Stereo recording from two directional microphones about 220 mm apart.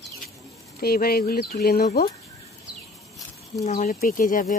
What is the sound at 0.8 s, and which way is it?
Speech, 45° left (ahead or behind).